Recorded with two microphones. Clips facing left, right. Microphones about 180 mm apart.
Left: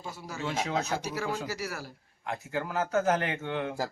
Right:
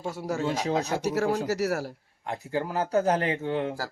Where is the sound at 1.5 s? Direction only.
70° right (ahead or behind).